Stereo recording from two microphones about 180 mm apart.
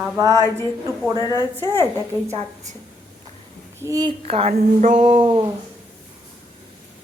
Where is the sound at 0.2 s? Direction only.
20° right (ahead or behind).